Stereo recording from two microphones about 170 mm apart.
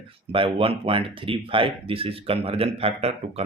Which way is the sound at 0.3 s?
30° right (ahead or behind).